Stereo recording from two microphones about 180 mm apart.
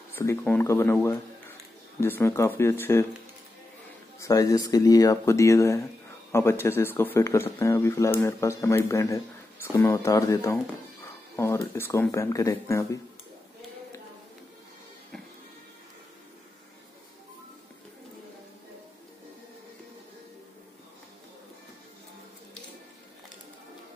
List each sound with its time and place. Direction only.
0.1 s speech: 15° left (ahead or behind)
2.0 s speech: 10° left (ahead or behind)
4.2 s speech: 20° left (ahead or behind)